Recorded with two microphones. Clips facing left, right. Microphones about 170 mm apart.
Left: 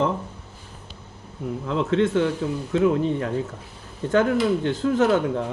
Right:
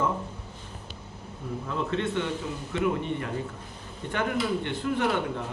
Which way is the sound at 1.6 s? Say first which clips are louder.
Left 8 dB; 90° left.